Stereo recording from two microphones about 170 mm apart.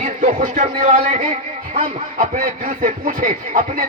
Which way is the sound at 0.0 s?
50° right (ahead or behind).